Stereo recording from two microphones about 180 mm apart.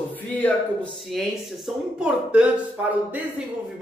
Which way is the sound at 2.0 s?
5° right (ahead or behind).